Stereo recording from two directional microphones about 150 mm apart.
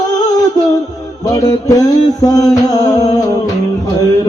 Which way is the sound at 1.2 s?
20° left (ahead or behind).